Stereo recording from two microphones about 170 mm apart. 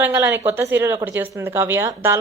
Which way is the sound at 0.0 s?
10° right (ahead or behind).